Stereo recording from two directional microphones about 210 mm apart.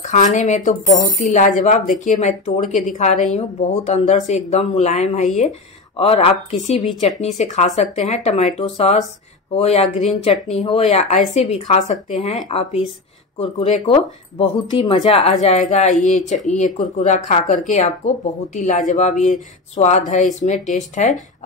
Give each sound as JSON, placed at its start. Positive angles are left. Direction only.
{"t": 0.0, "sound": "speech", "side_deg": 35}